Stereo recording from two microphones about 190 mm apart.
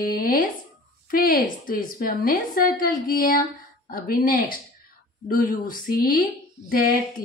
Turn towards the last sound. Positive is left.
turn(degrees=50)  # may be behind; listen again after turning